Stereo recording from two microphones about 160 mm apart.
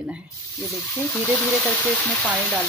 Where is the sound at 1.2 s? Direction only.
15° left (ahead or behind).